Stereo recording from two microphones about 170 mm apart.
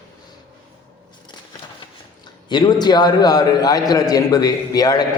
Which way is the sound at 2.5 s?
25° left (ahead or behind).